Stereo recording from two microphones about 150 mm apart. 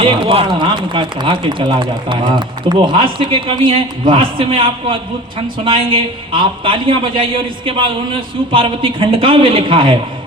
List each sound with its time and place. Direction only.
0.0 s speech: 35° right (ahead or behind)